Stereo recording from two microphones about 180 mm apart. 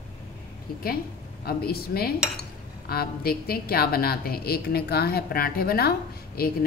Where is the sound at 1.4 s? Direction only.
60° left (ahead or behind).